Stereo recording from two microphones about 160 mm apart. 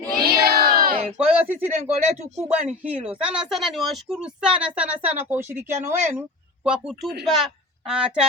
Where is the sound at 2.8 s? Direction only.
10° right (ahead or behind).